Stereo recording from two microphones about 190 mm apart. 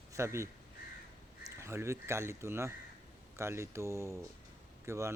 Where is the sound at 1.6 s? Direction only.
15° right (ahead or behind).